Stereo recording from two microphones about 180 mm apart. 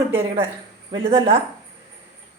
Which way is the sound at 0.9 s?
30° right (ahead or behind).